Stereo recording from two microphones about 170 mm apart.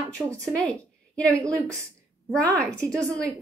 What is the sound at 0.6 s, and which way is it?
A woman's voice, 5° left (ahead or behind).